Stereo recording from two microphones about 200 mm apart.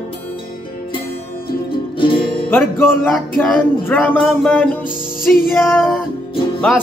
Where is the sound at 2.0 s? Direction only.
25° left (ahead or behind).